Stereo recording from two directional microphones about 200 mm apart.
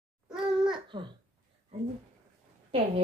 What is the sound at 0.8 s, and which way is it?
Speech, 25° right (ahead or behind).